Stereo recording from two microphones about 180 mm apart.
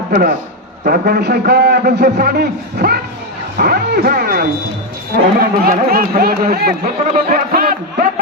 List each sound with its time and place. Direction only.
0.1 s a man's voice: 50° right (ahead or behind)